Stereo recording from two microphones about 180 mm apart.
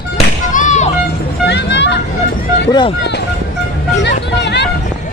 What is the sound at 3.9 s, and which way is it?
Music, 75° left (ahead or behind).